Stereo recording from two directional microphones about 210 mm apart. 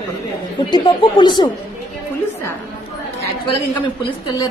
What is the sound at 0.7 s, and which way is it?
Speech, 20° left (ahead or behind).